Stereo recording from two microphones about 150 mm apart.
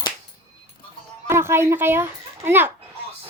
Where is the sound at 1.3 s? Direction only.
15° right (ahead or behind).